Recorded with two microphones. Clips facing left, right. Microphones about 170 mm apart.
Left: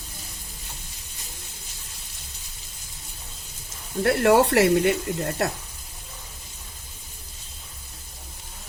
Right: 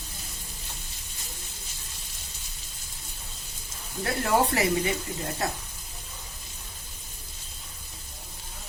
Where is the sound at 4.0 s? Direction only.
65° left (ahead or behind).